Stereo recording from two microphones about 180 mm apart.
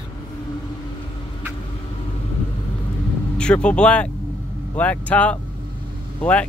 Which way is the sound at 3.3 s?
5° left (ahead or behind).